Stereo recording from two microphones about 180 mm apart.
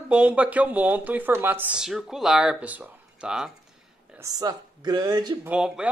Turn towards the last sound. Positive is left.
turn(degrees=-5)  # may be behind; listen again after turning